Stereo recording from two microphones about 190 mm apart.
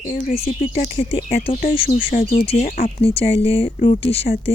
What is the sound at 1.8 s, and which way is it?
Speech, 45° left (ahead or behind).